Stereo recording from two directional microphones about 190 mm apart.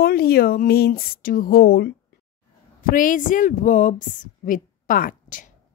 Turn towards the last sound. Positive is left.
turn(degrees=45)  # may be behind; listen again after turning